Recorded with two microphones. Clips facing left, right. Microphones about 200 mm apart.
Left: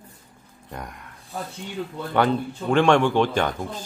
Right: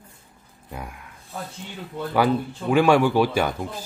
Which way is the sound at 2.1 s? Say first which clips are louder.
Even; 5° right (ahead or behind).